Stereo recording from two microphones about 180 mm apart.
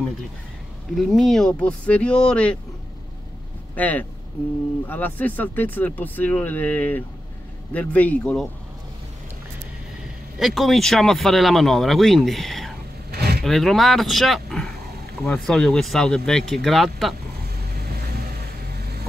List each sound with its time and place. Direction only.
0.9 s speech: centre (ahead or behind)
3.7 s speech: 10° left (ahead or behind)
10.4 s speech: centre (ahead or behind)
13.1 s vehicle: 60° right (ahead or behind)
13.4 s speech: centre (ahead or behind)